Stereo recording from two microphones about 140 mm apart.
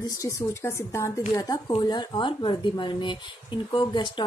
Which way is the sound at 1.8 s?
30° left (ahead or behind).